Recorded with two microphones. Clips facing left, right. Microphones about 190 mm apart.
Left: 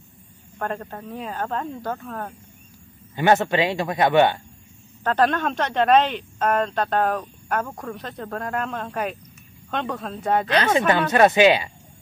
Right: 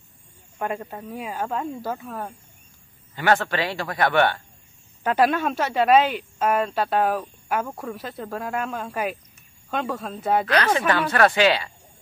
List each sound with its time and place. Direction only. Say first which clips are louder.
0.6 s speech: even; 10° right (ahead or behind)
3.2 s speech: left 3 dB; 20° left (ahead or behind)
5.0 s speech: even; 10° right (ahead or behind)
10.4 s speech: left 2 dB; 25° left (ahead or behind)